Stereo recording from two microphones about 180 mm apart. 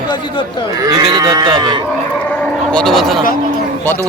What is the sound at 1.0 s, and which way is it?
Speech, 25° right (ahead or behind).